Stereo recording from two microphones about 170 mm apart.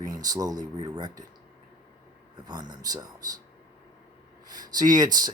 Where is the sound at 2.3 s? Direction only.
25° right (ahead or behind).